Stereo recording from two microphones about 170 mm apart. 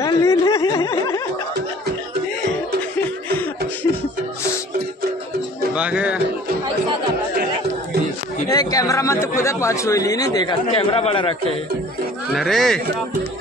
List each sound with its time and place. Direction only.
0.0 s a sound: 15° left (ahead or behind)
5.8 s speech: 5° right (ahead or behind)
8.5 s speech: 20° left (ahead or behind)
10.7 s a man's voice: 35° left (ahead or behind)
12.4 s speech: centre (ahead or behind)